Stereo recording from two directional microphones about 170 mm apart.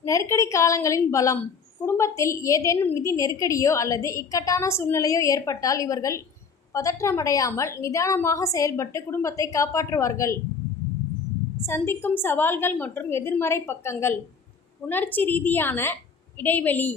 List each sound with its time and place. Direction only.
0.0 s a woman's voice: 15° left (ahead or behind)
11.6 s a woman's voice: 15° left (ahead or behind)